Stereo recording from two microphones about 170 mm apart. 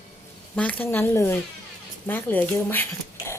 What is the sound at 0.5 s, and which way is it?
Speech, 10° left (ahead or behind).